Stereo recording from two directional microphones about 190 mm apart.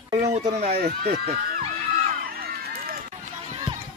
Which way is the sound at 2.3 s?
50° right (ahead or behind).